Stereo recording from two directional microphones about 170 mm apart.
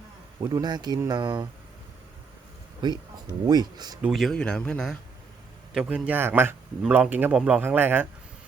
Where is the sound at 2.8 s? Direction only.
25° right (ahead or behind).